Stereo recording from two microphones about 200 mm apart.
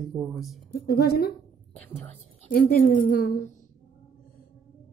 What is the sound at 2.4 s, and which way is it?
Speech, 45° left (ahead or behind).